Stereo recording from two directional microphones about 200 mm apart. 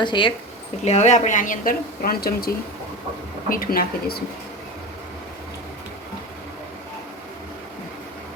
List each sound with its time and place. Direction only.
0.0 s speech: 25° left (ahead or behind)
0.9 s speech: 35° left (ahead or behind)